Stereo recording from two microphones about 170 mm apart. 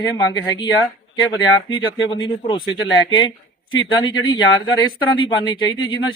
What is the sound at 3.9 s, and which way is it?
Speech, 25° left (ahead or behind).